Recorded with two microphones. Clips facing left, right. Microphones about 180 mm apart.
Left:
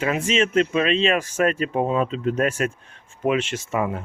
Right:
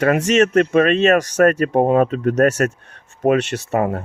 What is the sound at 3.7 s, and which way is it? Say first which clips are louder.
Speech: right 5 dB; 45° right (ahead or behind).